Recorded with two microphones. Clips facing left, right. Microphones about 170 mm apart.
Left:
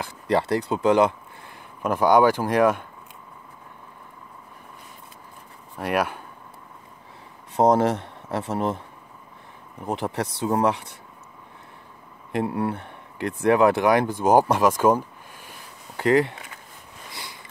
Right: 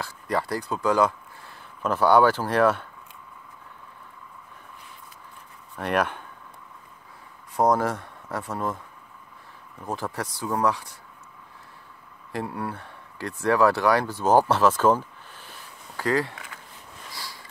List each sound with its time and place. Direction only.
0.0 s speech: 25° left (ahead or behind)
5.8 s speech: 10° left (ahead or behind)
7.5 s speech: 25° left (ahead or behind)
12.3 s speech: 25° left (ahead or behind)
17.1 s sniff: 20° left (ahead or behind)